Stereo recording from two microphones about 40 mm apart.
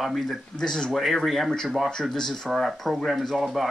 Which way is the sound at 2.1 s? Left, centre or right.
Centre.